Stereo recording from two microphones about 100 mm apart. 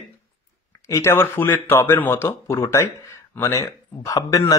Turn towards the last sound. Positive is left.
turn(degrees=35)  # may be behind; listen again after turning